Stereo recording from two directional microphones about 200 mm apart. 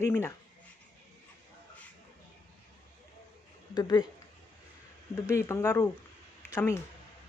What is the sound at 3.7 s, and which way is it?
Speech, 20° left (ahead or behind).